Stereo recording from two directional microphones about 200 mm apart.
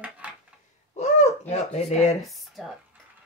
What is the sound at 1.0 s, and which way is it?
Speech, 35° left (ahead or behind).